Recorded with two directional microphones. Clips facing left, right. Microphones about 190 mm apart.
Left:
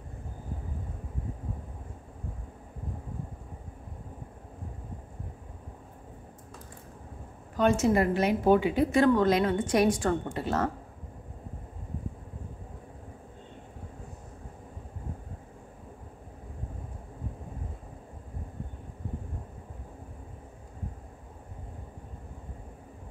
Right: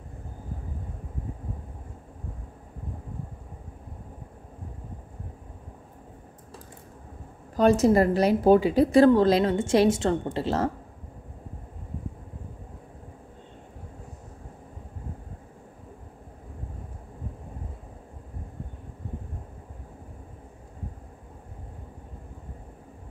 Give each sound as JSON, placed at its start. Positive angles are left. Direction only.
{"t": 7.5, "sound": "a woman's voice", "side_deg": -35}